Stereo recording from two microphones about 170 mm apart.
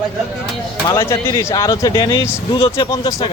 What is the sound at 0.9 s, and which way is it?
Speech, 15° left (ahead or behind).